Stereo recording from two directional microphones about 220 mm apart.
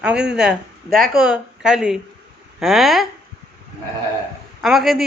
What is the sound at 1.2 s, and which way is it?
A woman's voice, 5° right (ahead or behind).